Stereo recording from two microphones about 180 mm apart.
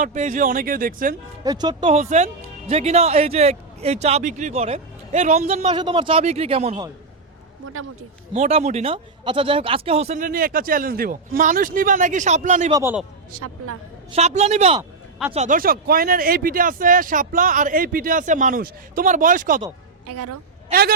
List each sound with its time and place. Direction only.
0.0 s speech: 40° right (ahead or behind)
1.5 s speech: 25° right (ahead or behind)
1.9 s speech: 40° right (ahead or behind)
5.7 s speech: 25° right (ahead or behind)
8.3 s speech: 35° right (ahead or behind)
12.7 s a man's voice: 15° right (ahead or behind)
14.1 s speech: 40° right (ahead or behind)